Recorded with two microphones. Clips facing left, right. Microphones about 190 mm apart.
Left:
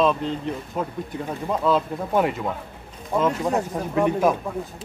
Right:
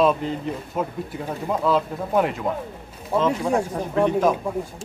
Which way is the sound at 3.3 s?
10° right (ahead or behind).